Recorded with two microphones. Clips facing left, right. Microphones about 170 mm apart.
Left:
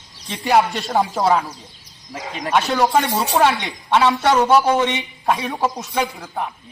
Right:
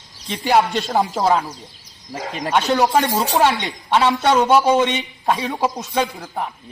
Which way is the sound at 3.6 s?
15° right (ahead or behind).